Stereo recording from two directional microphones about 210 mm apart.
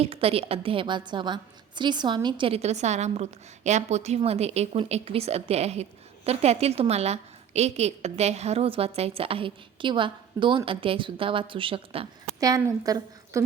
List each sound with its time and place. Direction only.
0.0 s a woman's voice: 25° right (ahead or behind)